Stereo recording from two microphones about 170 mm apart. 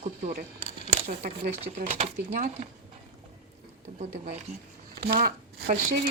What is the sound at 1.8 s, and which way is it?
Speech, 40° right (ahead or behind).